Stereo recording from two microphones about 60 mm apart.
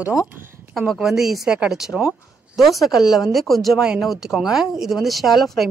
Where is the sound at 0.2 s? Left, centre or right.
Right.